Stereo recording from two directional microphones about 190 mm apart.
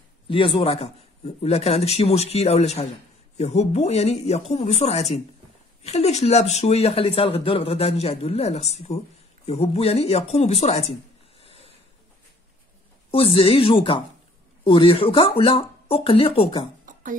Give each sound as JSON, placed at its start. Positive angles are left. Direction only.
{"t": 0.3, "sound": "speech", "side_deg": 30}
{"t": 11.4, "sound": "a sound", "side_deg": 30}
{"t": 13.1, "sound": "speech", "side_deg": 30}